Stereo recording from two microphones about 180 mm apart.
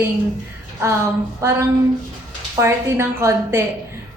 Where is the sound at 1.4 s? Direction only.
15° right (ahead or behind).